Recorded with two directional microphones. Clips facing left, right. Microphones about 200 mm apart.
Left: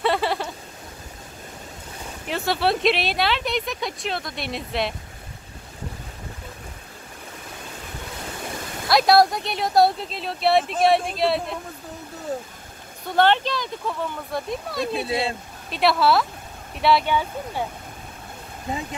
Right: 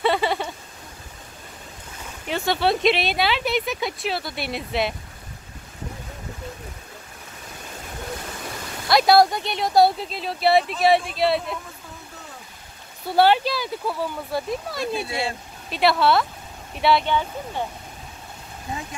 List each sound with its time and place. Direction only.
0.0 s a sound: centre (ahead or behind)
2.2 s speech: centre (ahead or behind)
8.8 s speech: centre (ahead or behind)
12.3 s vehicle: 40° left (ahead or behind)
13.0 s speech: 10° right (ahead or behind); by 17.6 s 10° left (ahead or behind)